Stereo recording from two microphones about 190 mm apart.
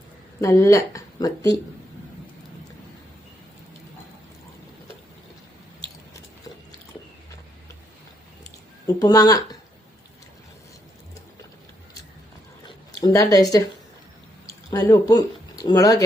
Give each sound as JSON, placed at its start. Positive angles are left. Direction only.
{"t": 0.4, "sound": "speech", "side_deg": 15}
{"t": 8.9, "sound": "speech", "side_deg": 20}
{"t": 12.6, "sound": "a sound", "side_deg": 20}
{"t": 14.4, "sound": "speech", "side_deg": 15}